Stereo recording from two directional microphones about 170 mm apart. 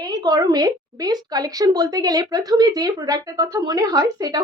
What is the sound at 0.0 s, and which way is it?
A woman's voice, 25° right (ahead or behind).